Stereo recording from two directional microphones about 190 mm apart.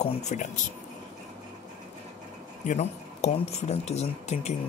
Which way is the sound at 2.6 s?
35° left (ahead or behind).